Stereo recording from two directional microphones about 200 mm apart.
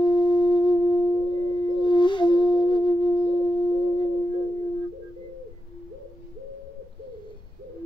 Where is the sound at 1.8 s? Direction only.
25° left (ahead or behind).